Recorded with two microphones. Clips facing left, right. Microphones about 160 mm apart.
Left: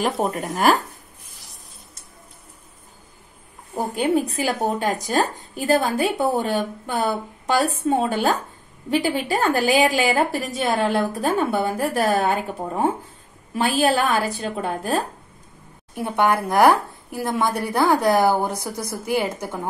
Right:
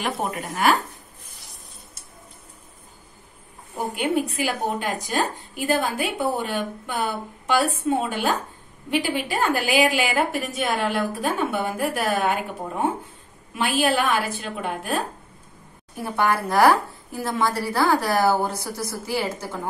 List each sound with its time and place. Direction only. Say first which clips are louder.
0.0 s speech: left 4 dB; 40° left (ahead or behind)
3.7 s speech: left 3 dB; 35° left (ahead or behind)
13.6 s speech: left 2 dB; 35° left (ahead or behind)
16.0 s speech: left 3 dB; 15° left (ahead or behind)